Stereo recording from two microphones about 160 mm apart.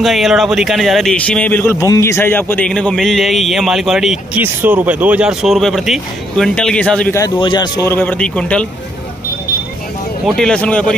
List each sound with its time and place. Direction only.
0.0 s speech: centre (ahead or behind)
7.3 s speech: 30° left (ahead or behind)
7.9 s speech: 10° left (ahead or behind)
10.2 s speech: 5° left (ahead or behind)